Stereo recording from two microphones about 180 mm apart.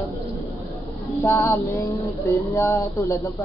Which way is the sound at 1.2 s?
15° left (ahead or behind).